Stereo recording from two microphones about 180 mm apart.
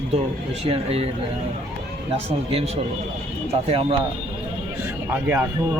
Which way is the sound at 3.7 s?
30° right (ahead or behind).